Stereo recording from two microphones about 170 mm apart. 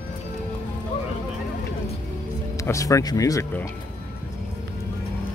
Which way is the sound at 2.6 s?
20° left (ahead or behind).